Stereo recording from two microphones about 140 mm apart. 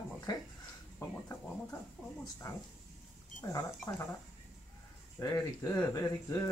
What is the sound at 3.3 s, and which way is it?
Speech, 15° left (ahead or behind).